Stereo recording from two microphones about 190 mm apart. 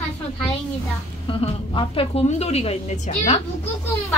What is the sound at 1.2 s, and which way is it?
A woman's voice, 25° left (ahead or behind).